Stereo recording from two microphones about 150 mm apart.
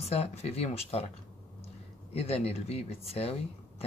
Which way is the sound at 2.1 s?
40° left (ahead or behind).